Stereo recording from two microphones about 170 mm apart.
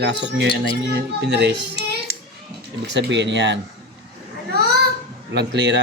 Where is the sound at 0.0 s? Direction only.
90° right.